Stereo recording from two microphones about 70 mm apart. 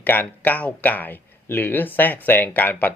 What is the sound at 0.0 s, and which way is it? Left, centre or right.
Speech, left.